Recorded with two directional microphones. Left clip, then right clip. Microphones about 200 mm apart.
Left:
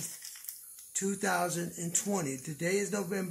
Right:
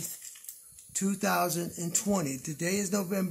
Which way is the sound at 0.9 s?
50° right (ahead or behind).